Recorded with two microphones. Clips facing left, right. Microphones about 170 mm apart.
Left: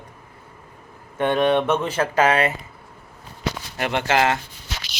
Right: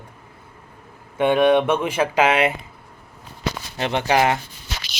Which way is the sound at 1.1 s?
10° right (ahead or behind).